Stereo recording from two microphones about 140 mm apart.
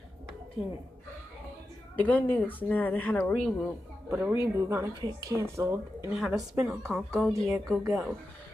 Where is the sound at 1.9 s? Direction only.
10° left (ahead or behind).